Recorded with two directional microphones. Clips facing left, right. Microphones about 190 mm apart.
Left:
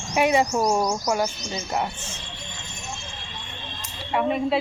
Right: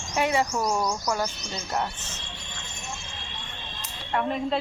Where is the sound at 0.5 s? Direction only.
30° left (ahead or behind).